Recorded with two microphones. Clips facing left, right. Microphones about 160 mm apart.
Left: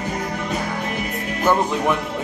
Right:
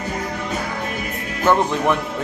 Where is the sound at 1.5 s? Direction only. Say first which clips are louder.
Right 2 dB; 15° left (ahead or behind).